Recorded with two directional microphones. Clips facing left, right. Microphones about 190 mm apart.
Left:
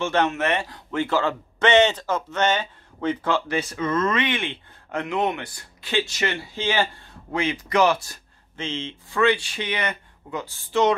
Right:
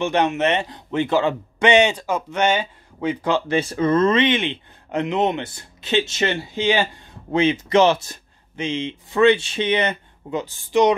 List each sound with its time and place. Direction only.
0.0 s a man's voice: 15° right (ahead or behind)